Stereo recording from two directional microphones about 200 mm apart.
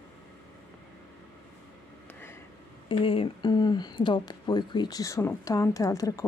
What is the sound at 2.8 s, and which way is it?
Speech, 25° left (ahead or behind).